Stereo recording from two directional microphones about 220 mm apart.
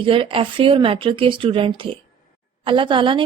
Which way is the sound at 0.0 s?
25° right (ahead or behind).